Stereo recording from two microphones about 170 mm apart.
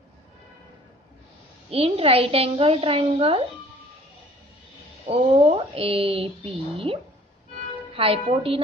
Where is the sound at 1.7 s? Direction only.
35° right (ahead or behind).